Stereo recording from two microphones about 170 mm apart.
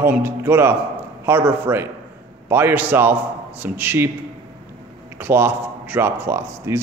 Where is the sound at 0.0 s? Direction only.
15° right (ahead or behind).